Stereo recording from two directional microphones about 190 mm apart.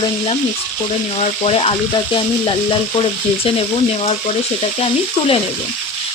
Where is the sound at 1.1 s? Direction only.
35° left (ahead or behind).